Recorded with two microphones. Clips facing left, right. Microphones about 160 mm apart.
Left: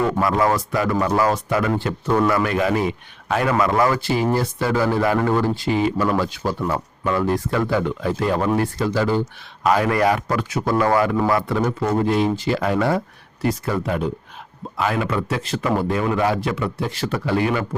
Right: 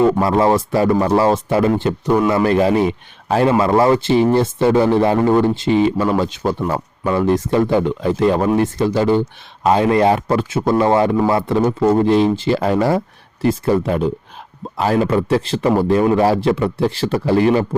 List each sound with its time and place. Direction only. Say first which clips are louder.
0.0 s speech: right 5 dB; 25° right (ahead or behind)
2.4 s a man's voice: right 6 dB; 30° right (ahead or behind)